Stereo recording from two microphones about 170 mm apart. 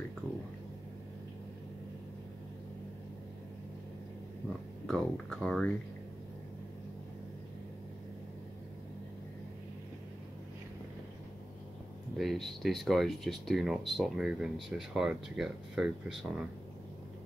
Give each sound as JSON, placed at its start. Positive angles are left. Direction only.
{"t": 4.8, "sound": "speech", "side_deg": 5}
{"t": 12.2, "sound": "speech", "side_deg": 0}